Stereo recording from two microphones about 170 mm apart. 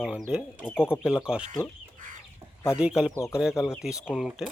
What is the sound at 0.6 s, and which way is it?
Speech, 15° left (ahead or behind).